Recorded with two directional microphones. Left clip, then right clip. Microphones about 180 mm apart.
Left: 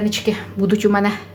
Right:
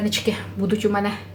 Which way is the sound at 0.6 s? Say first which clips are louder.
Left 5 dB; 40° left (ahead or behind).